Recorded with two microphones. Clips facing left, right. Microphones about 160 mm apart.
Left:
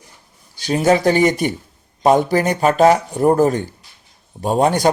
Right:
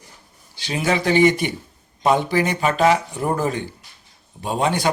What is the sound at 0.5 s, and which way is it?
Speech, 40° left (ahead or behind).